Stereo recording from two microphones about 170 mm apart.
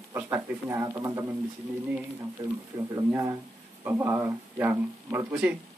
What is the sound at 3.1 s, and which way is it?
Speech, 15° right (ahead or behind).